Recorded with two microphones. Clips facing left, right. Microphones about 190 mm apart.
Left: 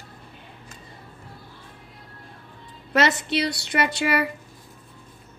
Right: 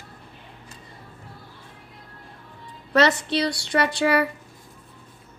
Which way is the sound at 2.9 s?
20° left (ahead or behind).